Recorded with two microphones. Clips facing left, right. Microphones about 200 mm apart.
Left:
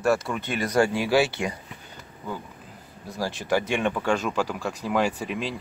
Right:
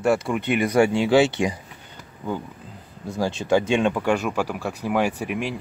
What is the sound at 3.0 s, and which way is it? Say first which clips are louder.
Speech: right 5 dB; 25° right (ahead or behind).